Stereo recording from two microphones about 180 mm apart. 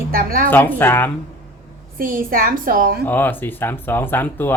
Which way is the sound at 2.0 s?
50° right (ahead or behind).